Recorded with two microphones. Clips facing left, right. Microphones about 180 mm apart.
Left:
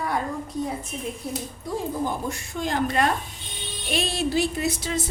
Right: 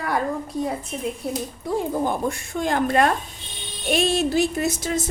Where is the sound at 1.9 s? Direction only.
55° right (ahead or behind).